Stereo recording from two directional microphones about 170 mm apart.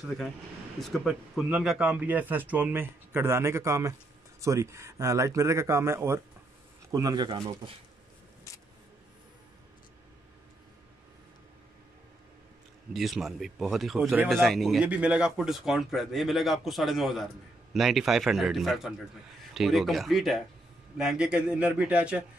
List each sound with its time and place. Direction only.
0.7 s a man's voice: centre (ahead or behind); by 7.7 s 30° right (ahead or behind)
8.5 s a sound: 20° left (ahead or behind)
12.9 s a man's voice: centre (ahead or behind)